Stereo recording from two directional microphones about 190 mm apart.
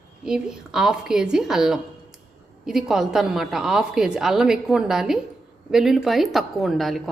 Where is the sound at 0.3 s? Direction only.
5° right (ahead or behind).